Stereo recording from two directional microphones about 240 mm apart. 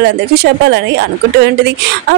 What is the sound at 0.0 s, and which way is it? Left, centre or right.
Speech, right.